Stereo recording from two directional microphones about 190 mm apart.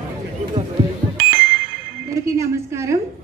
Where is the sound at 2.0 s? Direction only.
15° right (ahead or behind).